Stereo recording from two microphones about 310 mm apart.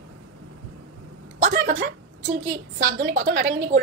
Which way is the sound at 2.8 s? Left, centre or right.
Right.